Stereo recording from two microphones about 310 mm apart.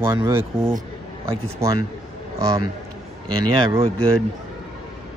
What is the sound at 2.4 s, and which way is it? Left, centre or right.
Speech, centre.